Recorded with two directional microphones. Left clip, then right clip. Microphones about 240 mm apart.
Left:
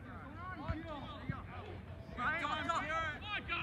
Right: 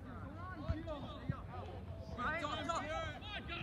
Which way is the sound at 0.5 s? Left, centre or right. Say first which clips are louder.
Even; centre.